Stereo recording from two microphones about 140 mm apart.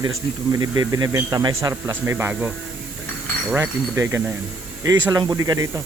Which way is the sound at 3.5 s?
20° right (ahead or behind).